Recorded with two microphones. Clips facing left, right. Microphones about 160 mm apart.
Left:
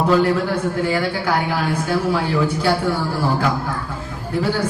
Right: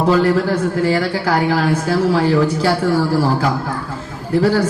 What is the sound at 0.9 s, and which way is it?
A man's voice, 35° right (ahead or behind).